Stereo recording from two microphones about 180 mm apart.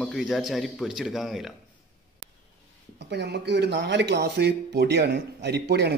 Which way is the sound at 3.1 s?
65° right (ahead or behind).